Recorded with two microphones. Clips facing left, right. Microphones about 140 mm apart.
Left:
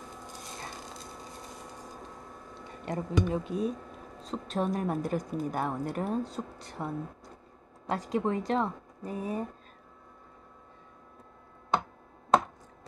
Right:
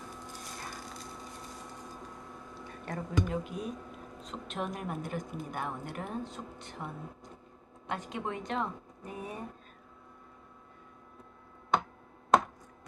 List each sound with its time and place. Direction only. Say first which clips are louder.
0.6 s wood: left 2 dB; 25° left (ahead or behind)
2.8 s a woman's voice: left 4 dB; 25° left (ahead or behind)